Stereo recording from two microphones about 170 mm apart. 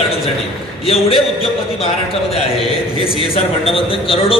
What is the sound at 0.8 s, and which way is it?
A man's voice, 35° left (ahead or behind).